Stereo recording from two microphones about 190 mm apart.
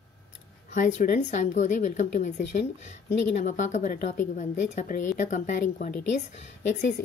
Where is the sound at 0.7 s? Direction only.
40° left (ahead or behind).